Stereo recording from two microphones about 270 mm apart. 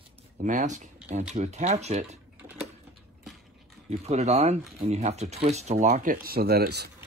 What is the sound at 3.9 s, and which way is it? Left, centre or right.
Speech, right.